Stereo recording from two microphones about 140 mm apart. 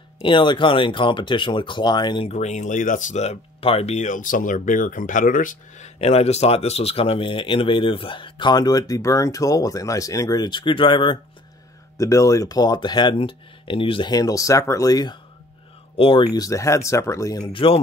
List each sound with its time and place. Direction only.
0.2 s speech: 35° left (ahead or behind)
2.2 s speech: 55° left (ahead or behind)
5.9 s speech: 50° left (ahead or behind)
12.0 s speech: 20° left (ahead or behind)
16.0 s speech: 40° left (ahead or behind)
16.3 s speech: 25° left (ahead or behind)
17.5 s speech: 40° left (ahead or behind)